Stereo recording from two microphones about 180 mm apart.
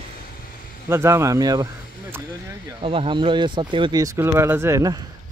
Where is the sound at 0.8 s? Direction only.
15° right (ahead or behind).